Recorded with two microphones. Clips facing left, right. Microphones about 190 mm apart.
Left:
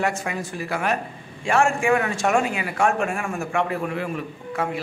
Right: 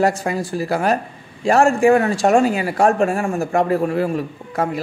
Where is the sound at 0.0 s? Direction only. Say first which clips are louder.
Right 7 dB; 35° right (ahead or behind).